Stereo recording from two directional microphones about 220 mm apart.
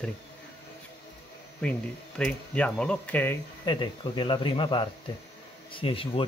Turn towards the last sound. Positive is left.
turn(degrees=25)  # may be behind; listen again after turning